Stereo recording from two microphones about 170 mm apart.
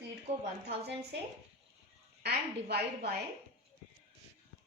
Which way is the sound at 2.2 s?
75° right (ahead or behind).